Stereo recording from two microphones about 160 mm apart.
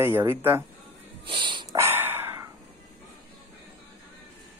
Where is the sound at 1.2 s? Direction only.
30° right (ahead or behind).